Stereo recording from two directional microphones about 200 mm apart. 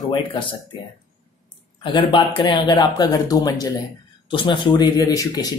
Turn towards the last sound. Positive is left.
turn(degrees=20)  # may be behind; listen again after turning